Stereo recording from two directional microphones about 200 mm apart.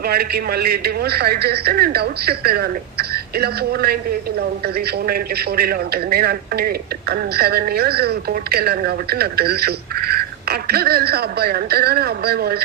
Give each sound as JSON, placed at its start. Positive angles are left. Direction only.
{"t": 0.0, "sound": "a man's voice", "side_deg": -50}